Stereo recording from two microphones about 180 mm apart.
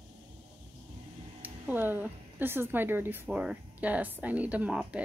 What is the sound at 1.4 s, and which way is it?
A woman's voice, 10° right (ahead or behind).